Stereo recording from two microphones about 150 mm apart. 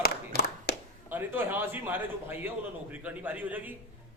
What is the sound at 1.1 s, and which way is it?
A man's voice, 15° right (ahead or behind).